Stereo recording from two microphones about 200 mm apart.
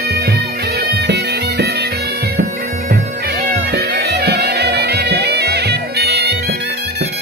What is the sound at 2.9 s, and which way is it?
Bagpipes, 50° right (ahead or behind).